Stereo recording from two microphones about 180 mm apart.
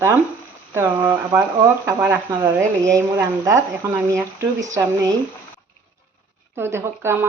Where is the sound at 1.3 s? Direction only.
20° right (ahead or behind).